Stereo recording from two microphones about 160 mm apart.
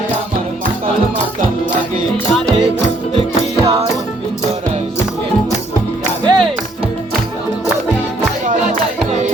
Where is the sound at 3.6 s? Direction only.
40° right (ahead or behind).